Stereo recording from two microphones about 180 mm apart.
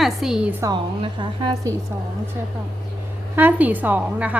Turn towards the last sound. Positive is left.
turn(degrees=-10)  # may be behind; listen again after turning